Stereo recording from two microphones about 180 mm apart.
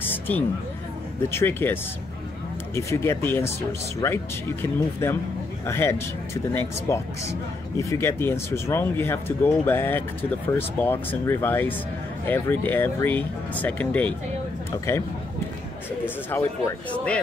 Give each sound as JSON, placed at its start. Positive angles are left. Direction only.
{"t": 0.0, "sound": "a sound", "side_deg": 10}
{"t": 1.3, "sound": "speech", "side_deg": 10}
{"t": 16.3, "sound": "speech", "side_deg": 15}